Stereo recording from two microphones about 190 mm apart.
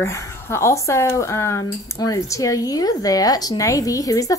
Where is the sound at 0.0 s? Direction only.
15° left (ahead or behind).